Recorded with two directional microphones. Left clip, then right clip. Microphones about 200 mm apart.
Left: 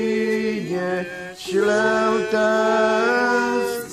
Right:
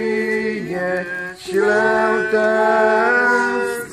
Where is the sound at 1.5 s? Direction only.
65° left (ahead or behind).